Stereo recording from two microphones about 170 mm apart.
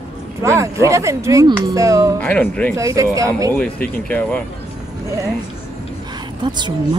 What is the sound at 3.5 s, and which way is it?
Speech, 10° left (ahead or behind).